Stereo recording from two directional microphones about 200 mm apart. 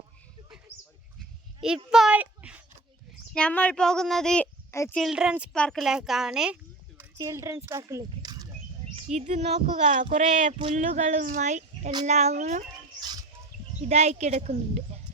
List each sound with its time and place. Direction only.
1.6 s a child's voice: 5° right (ahead or behind)
3.3 s speech: 5° left (ahead or behind)
4.7 s a child's voice: 15° left (ahead or behind)
4.9 s speech: centre (ahead or behind); by 8.5 s 20° right (ahead or behind)
9.0 s speech: 35° right (ahead or behind)
13.0 s a sound: 20° right (ahead or behind)
13.8 s speech: 35° right (ahead or behind)